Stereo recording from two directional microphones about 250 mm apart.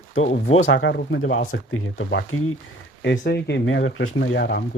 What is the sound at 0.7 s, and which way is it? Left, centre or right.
Speech, left.